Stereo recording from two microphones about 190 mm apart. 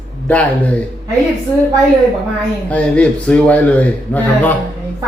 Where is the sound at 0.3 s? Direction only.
10° left (ahead or behind).